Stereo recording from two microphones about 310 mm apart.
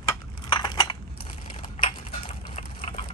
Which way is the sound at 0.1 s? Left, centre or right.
Centre.